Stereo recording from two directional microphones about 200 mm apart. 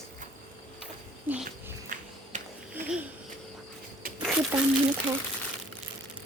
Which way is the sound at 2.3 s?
40° right (ahead or behind).